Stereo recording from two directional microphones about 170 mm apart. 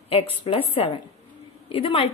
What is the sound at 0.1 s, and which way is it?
A woman's voice, 30° left (ahead or behind).